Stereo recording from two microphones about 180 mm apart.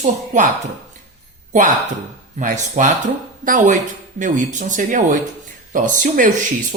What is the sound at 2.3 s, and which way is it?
A woman's voice, 45° right (ahead or behind).